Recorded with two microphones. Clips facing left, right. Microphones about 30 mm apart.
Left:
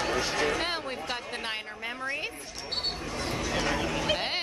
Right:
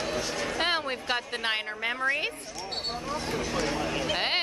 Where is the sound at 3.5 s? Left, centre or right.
Left.